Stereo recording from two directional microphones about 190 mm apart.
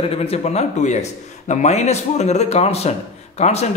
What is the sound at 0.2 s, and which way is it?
Speech, 35° left (ahead or behind).